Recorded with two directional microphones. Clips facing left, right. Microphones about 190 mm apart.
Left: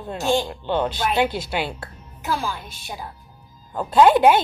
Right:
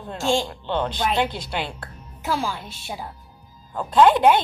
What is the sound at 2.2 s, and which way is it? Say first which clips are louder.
Speech: right 1 dB; 25° right (ahead or behind).